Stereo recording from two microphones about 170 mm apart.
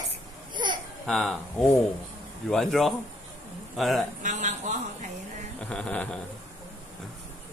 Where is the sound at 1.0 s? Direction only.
Centre (ahead or behind).